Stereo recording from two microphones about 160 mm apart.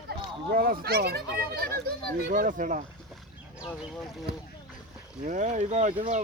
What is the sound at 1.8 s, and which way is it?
Speech, 70° right (ahead or behind).